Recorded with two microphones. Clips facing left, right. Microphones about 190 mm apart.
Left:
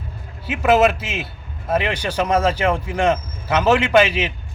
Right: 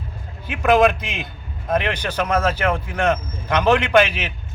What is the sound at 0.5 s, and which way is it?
A man's voice, 5° left (ahead or behind).